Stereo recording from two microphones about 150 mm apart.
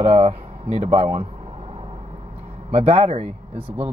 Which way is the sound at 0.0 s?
40° right (ahead or behind).